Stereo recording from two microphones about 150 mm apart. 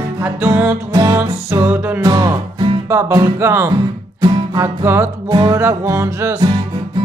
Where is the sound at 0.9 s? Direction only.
25° right (ahead or behind).